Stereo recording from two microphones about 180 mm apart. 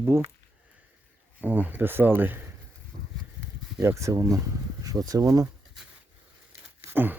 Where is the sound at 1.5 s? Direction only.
10° right (ahead or behind).